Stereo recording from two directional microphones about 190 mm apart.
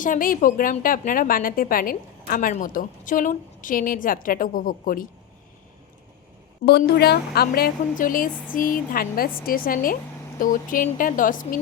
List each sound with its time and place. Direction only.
0.0 s a woman's voice: 45° left (ahead or behind)
6.7 s a woman's voice: 55° left (ahead or behind)